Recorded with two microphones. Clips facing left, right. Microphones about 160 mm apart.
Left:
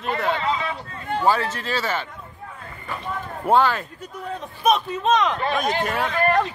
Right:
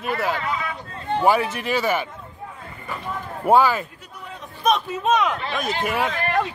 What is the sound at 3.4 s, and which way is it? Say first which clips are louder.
Speech: right 2 dB; 10° right (ahead or behind).